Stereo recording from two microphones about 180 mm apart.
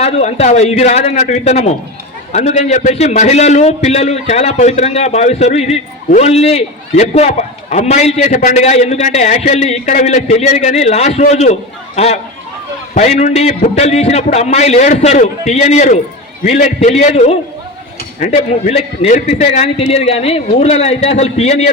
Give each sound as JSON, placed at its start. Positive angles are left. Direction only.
{"t": 0.0, "sound": "a man's voice", "side_deg": 35}